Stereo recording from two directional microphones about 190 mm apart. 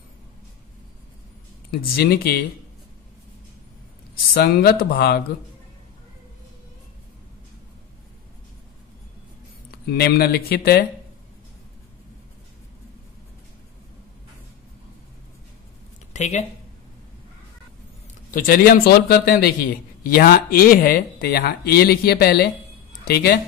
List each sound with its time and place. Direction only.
1.7 s a man's voice: 55° left (ahead or behind)
4.3 s a man's voice: 55° left (ahead or behind)
9.7 s speech: 55° left (ahead or behind)
16.1 s speech: 40° left (ahead or behind)
18.3 s a man's voice: 50° left (ahead or behind)